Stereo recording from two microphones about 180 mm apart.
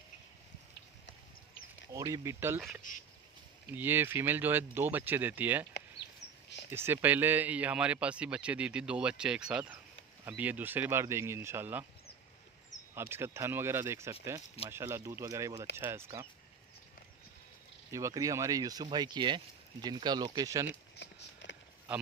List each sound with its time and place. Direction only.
1.9 s speech: 20° right (ahead or behind)
2.9 s duck: 45° left (ahead or behind)
3.7 s speech: 10° right (ahead or behind)
5.7 s a sound: 65° left (ahead or behind)
6.7 s speech: 10° right (ahead or behind)
12.9 s speech: 15° right (ahead or behind)
17.9 s speech: 20° right (ahead or behind)
21.0 s a sound: 75° left (ahead or behind)